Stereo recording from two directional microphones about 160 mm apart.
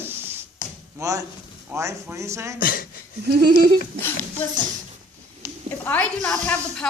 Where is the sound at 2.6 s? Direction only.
60° left (ahead or behind).